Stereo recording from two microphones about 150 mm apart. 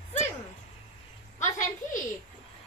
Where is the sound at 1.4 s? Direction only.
55° left (ahead or behind).